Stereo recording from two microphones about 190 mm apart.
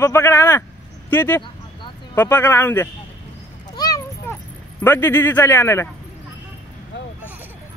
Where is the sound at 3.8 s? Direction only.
20° left (ahead or behind).